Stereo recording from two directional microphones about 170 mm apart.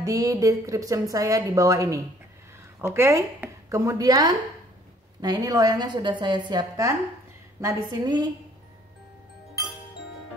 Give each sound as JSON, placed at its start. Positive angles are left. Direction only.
{"t": 0.0, "sound": "a woman's voice", "side_deg": -20}